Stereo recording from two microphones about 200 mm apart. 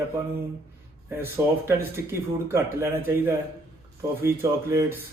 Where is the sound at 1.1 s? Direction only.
10° right (ahead or behind).